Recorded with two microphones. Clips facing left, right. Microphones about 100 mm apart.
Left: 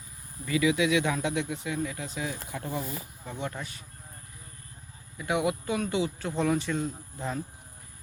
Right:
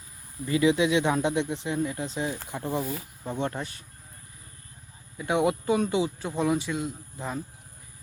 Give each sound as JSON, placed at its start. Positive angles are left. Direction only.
{"t": 0.4, "sound": "speech", "side_deg": -30}
{"t": 5.1, "sound": "speech", "side_deg": -25}